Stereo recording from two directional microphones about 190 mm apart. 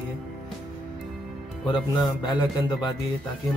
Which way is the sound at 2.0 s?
25° left (ahead or behind).